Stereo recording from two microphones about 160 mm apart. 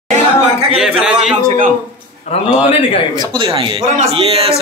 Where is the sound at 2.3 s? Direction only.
40° left (ahead or behind).